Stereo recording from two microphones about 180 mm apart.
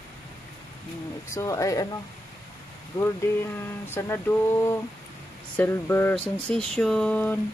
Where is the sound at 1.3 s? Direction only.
20° left (ahead or behind).